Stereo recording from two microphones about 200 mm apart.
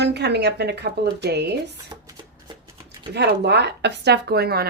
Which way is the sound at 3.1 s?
55° right (ahead or behind).